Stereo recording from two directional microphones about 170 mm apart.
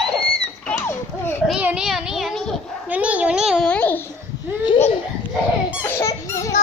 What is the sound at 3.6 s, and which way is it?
Babbling, 10° left (ahead or behind).